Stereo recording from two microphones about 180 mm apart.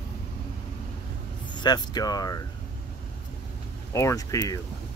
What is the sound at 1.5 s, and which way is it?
Speech, 25° left (ahead or behind).